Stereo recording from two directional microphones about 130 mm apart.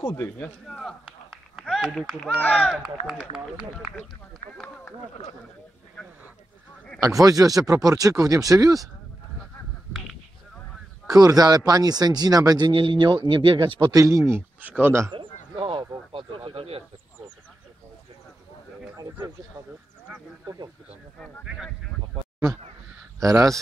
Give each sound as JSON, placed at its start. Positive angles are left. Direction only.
{"t": 0.1, "sound": "speech", "side_deg": 20}
{"t": 0.7, "sound": "speech", "side_deg": 5}
{"t": 3.9, "sound": "speech", "side_deg": 60}
{"t": 7.0, "sound": "speech", "side_deg": -25}
{"t": 11.1, "sound": "speech", "side_deg": -25}
{"t": 15.5, "sound": "a sound", "side_deg": -45}
{"t": 18.9, "sound": "speech", "side_deg": -25}
{"t": 23.2, "sound": "speech", "side_deg": -25}